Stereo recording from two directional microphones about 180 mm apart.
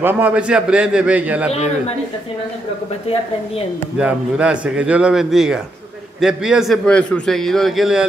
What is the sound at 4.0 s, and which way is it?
A man's voice, 5° right (ahead or behind).